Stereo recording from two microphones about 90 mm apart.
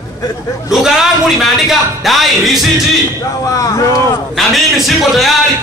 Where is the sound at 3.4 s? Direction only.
40° left (ahead or behind).